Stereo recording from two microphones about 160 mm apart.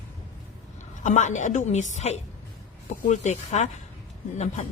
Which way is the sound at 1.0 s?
50° left (ahead or behind).